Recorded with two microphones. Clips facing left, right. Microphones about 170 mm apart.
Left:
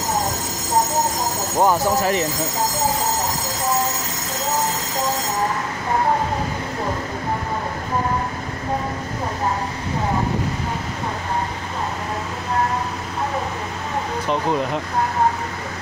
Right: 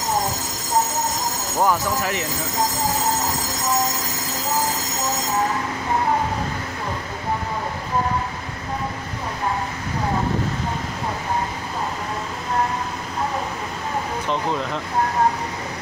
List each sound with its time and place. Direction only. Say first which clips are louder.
1.6 s speech: left 3 dB; 30° left (ahead or behind)